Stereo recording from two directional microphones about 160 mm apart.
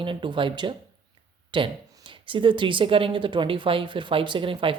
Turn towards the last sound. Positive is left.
turn(degrees=-35)  # may be behind; listen again after turning